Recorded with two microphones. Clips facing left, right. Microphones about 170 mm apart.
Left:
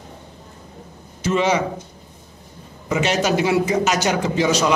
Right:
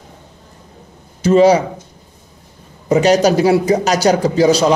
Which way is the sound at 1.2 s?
35° right (ahead or behind).